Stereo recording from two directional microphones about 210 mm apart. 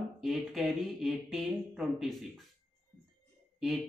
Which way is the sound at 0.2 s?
Centre (ahead or behind).